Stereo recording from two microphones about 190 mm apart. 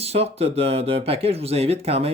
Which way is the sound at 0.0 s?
30° right (ahead or behind).